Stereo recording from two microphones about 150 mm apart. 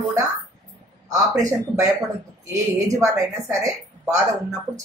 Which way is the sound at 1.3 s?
25° right (ahead or behind).